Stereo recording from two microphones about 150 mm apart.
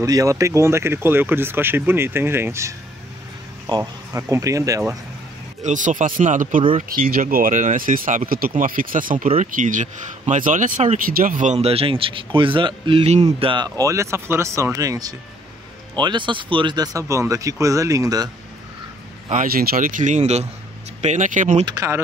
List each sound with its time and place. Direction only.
0.0 s speech: 25° right (ahead or behind)
5.6 s speech: 55° right (ahead or behind)
6.9 s a man's voice: 75° right (ahead or behind); by 18.3 s 25° right (ahead or behind)
19.3 s speech: 85° right; by 21.6 s 60° right (ahead or behind)
21.6 s speech: 20° right (ahead or behind)